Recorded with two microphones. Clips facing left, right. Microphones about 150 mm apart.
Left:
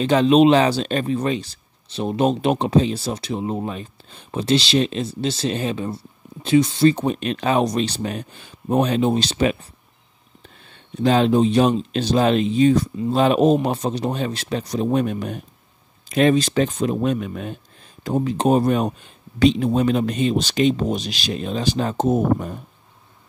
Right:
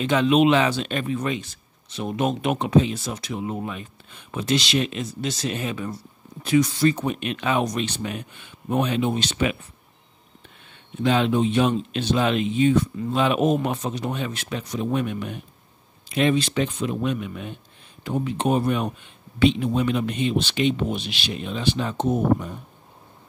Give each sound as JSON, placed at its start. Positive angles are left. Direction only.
{"t": 0.0, "sound": "speech", "side_deg": 35}